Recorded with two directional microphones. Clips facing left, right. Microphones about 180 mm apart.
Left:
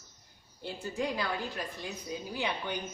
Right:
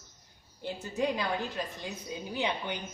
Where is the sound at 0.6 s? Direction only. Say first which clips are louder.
Right 3 dB; 20° right (ahead or behind).